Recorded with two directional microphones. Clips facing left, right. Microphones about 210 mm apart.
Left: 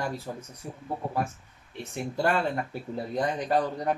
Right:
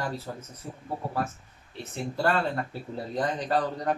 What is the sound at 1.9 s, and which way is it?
Speech, 15° left (ahead or behind).